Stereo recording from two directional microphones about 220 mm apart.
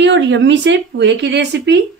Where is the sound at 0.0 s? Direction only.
55° right (ahead or behind).